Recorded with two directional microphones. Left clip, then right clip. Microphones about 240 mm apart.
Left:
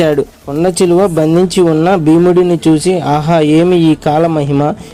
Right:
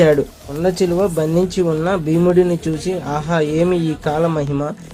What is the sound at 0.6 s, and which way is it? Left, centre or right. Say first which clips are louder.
Speech: left 7 dB; left.